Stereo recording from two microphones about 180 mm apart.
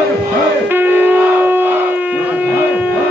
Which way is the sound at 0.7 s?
10° right (ahead or behind).